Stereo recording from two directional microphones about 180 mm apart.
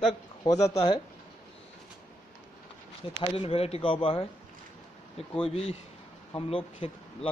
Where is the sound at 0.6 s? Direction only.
35° left (ahead or behind).